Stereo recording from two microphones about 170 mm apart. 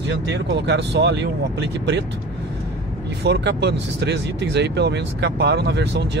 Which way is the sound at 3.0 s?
90° right.